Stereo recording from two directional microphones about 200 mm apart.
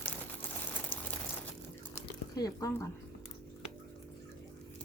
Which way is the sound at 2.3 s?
20° left (ahead or behind).